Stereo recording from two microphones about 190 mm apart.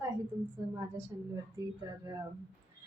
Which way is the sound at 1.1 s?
20° right (ahead or behind).